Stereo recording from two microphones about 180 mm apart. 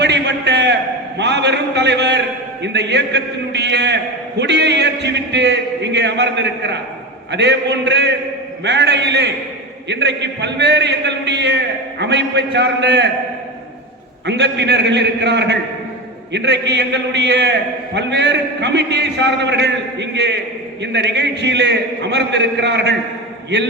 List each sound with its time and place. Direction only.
0.0 s a sound: 70° right (ahead or behind)
1.2 s a man's voice: 70° right (ahead or behind)
14.3 s a man's voice: 75° right (ahead or behind)